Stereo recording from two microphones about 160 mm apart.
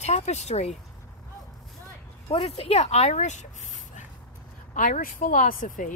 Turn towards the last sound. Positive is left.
turn(degrees=55)  # may be behind; listen again after turning